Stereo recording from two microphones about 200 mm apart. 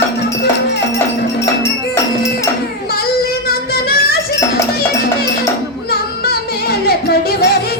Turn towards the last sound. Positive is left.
turn(degrees=50)  # may be behind; listen again after turning